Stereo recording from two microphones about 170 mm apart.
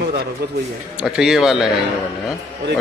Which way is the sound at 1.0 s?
5° right (ahead or behind).